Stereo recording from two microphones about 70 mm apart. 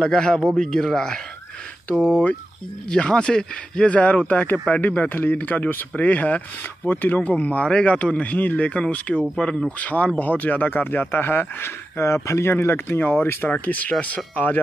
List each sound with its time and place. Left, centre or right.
0.0 s speech: centre
2.9 s speech: centre